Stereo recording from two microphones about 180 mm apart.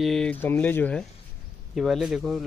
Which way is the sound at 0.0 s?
5° left (ahead or behind).